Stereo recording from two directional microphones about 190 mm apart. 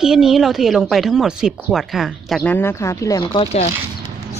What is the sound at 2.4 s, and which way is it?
Speech, 10° left (ahead or behind).